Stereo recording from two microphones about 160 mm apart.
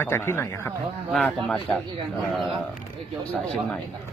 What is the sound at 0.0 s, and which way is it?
Speech, 15° left (ahead or behind).